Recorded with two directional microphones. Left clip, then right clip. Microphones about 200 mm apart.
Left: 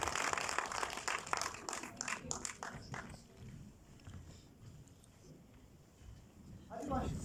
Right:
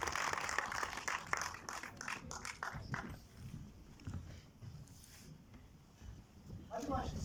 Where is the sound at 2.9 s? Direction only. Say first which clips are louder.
Right 3 dB; 15° left (ahead or behind).